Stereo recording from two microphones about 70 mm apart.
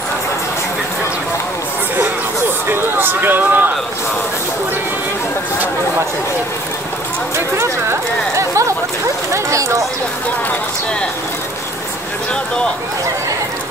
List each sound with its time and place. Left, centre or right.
2.7 s a sound: right
7.3 s chatter: right
9.3 s speech: right